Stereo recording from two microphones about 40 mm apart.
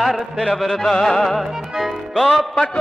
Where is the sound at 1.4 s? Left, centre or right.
Centre.